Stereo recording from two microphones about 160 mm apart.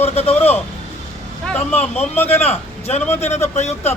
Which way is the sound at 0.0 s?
40° left (ahead or behind).